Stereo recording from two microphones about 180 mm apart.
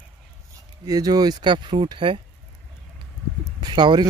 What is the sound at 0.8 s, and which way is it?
Speech, 20° right (ahead or behind).